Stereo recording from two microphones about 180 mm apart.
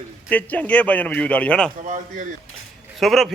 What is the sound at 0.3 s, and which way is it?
Speech, 10° left (ahead or behind).